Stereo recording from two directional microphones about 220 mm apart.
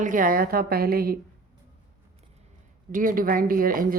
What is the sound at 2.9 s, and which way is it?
Speech, 40° right (ahead or behind).